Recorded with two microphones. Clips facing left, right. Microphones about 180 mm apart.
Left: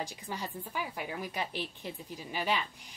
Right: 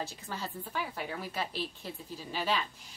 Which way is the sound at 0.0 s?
15° left (ahead or behind).